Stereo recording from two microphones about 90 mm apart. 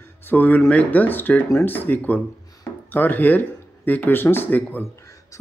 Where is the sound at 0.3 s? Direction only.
20° left (ahead or behind).